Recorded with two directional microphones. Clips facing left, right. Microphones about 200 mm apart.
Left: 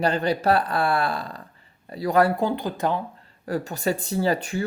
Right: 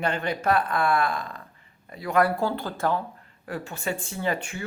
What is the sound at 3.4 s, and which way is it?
Speech, 40° left (ahead or behind).